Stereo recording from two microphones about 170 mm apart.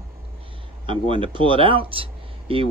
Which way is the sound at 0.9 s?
30° right (ahead or behind).